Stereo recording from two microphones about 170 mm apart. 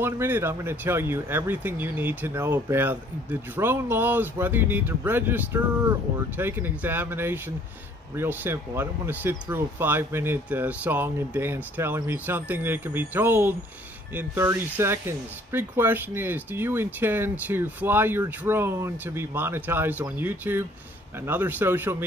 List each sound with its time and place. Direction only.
0.0 s speech: 15° right (ahead or behind)